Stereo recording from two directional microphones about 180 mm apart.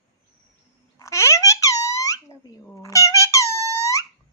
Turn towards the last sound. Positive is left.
turn(degrees=15)  # may be behind; listen again after turning